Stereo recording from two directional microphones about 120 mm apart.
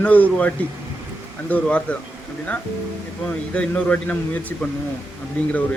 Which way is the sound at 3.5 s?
10° left (ahead or behind).